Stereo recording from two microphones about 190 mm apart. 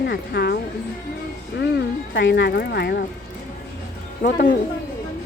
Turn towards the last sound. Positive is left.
turn(degrees=45)  # may be behind; listen again after turning